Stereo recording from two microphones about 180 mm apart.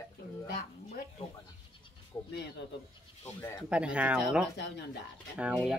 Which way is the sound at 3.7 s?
5° right (ahead or behind).